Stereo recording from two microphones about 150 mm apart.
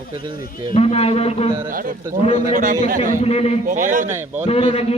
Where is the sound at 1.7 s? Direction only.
70° right (ahead or behind).